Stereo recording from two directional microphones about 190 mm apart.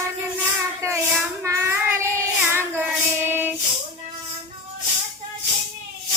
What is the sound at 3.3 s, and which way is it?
Music, 10° right (ahead or behind).